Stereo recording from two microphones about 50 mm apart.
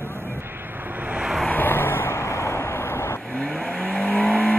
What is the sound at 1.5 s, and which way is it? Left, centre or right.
Vehicle, left.